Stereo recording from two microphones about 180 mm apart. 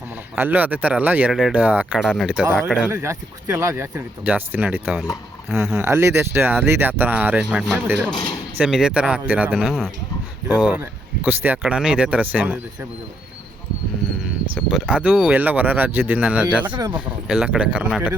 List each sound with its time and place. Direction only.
0.3 s speech: 10° right (ahead or behind)
2.9 s speech: 15° right (ahead or behind)
14.5 s speech: 5° right (ahead or behind)
16.7 s speech: 25° right (ahead or behind)
17.2 s speech: 5° right (ahead or behind)